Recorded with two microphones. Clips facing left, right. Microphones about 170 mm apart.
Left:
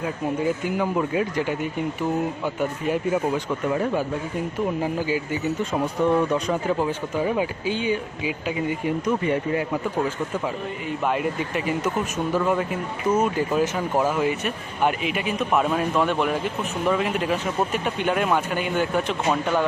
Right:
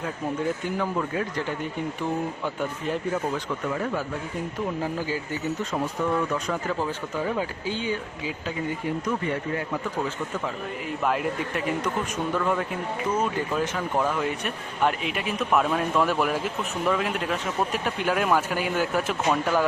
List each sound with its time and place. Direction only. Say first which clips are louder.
0.4 s speech: left 4 dB; 10° left (ahead or behind)
4.8 s speech: left 4 dB; 15° left (ahead or behind)
10.8 s speech: left 2 dB; centre (ahead or behind)